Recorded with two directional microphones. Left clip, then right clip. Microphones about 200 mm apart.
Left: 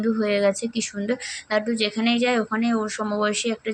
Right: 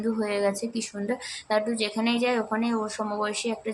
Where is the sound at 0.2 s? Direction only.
15° left (ahead or behind).